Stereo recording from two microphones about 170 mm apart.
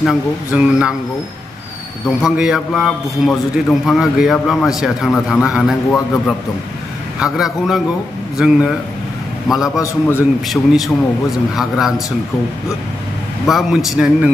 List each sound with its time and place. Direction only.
0.0 s a man's voice: 5° right (ahead or behind)
2.0 s a man's voice: 5° right (ahead or behind)
7.2 s a man's voice: 5° right (ahead or behind)
9.8 s a man's voice: 15° left (ahead or behind)
10.5 s a man's voice: centre (ahead or behind)
13.5 s a man's voice: centre (ahead or behind)